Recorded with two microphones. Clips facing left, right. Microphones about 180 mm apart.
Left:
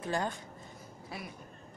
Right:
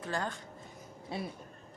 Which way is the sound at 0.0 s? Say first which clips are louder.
Left 2 dB; 15° left (ahead or behind).